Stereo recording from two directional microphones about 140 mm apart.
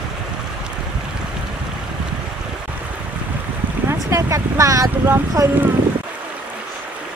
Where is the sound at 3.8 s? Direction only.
20° right (ahead or behind).